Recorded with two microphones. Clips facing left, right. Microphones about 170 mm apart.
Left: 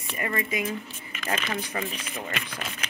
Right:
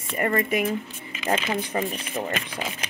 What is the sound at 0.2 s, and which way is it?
Speech, 45° right (ahead or behind).